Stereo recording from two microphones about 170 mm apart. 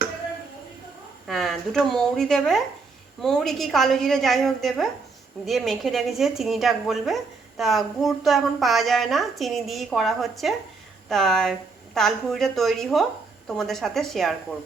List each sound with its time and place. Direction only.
1.3 s a woman's voice: centre (ahead or behind)